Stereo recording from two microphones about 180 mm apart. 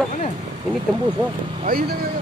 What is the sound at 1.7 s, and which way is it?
Speech, 55° right (ahead or behind).